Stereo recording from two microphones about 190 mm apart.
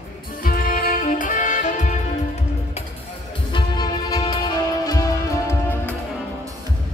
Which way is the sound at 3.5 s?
25° left (ahead or behind).